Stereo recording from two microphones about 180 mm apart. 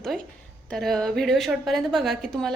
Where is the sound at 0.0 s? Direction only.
5° left (ahead or behind).